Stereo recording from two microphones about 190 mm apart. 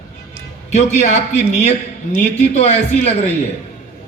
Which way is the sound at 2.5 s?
35° left (ahead or behind).